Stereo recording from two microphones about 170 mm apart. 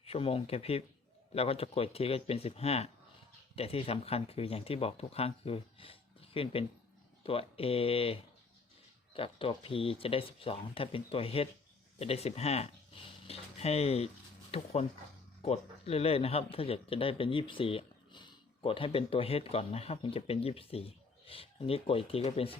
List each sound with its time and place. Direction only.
0.0 s speech: 35° left (ahead or behind)